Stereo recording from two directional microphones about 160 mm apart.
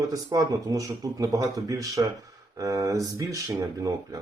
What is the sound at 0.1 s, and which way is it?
Speech, 20° right (ahead or behind).